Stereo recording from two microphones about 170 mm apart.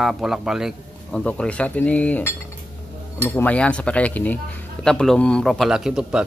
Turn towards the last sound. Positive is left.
turn(degrees=-5)  # may be behind; listen again after turning